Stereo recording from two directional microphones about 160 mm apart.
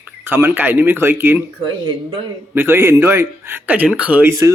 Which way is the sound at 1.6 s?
30° right (ahead or behind).